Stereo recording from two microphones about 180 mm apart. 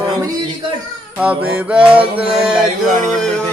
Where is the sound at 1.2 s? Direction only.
5° right (ahead or behind).